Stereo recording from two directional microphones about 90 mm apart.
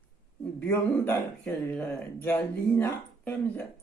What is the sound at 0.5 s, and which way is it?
Speech, 25° left (ahead or behind).